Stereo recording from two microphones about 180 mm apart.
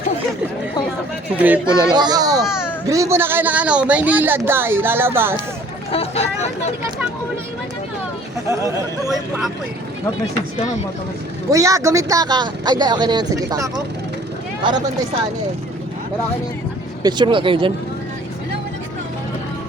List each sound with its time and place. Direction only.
1.4 s speech: 10° right (ahead or behind)
1.9 s speech: 25° right (ahead or behind)
5.9 s speech: 35° left (ahead or behind)
8.4 s speech: 15° right (ahead or behind)
9.0 s speech: centre (ahead or behind)
11.5 s speech: 20° right (ahead or behind)
17.0 s speech: 25° right (ahead or behind)